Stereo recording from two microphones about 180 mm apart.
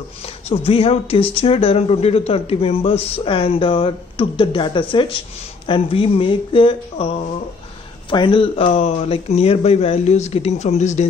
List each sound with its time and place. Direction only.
0.7 s speech: 30° left (ahead or behind)
8.1 s speech: 25° left (ahead or behind)